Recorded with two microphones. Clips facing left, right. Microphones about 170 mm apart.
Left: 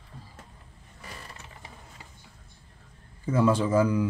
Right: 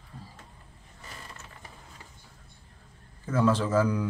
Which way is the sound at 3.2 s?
10° left (ahead or behind).